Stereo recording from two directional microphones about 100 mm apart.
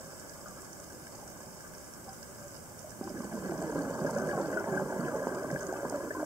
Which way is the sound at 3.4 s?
25° right (ahead or behind).